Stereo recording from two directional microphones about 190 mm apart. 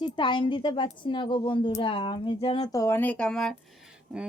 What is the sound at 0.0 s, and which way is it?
A woman's voice, 25° left (ahead or behind).